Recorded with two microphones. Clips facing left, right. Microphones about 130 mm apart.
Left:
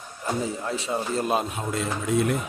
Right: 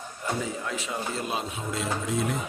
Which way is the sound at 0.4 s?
35° left (ahead or behind).